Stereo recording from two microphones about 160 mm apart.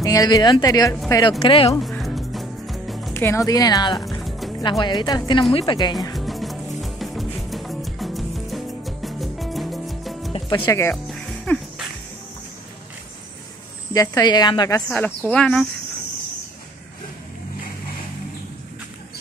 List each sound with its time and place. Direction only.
0.0 s speech: 25° left (ahead or behind)
1.4 s speech: 35° left (ahead or behind)
1.8 s music: centre (ahead or behind)
3.1 s speech: 15° left (ahead or behind)
4.2 s music: centre (ahead or behind)
4.6 s speech: 25° left (ahead or behind)
6.1 s music: centre (ahead or behind)
10.6 s speech: 15° left (ahead or behind)
11.1 s music: 5° left (ahead or behind)
13.9 s speech: 25° left (ahead or behind)
14.9 s speech: 10° left (ahead or behind)